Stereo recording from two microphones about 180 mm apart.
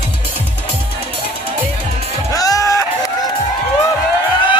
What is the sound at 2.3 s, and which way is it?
Music, 20° left (ahead or behind).